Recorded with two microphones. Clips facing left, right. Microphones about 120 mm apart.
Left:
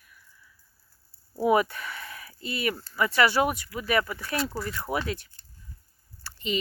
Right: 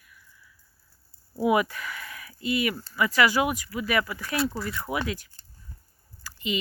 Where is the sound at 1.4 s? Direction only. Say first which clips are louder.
Left 1 dB; 35° left (ahead or behind).